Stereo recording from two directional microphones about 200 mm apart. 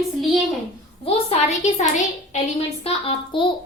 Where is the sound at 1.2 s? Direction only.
35° left (ahead or behind).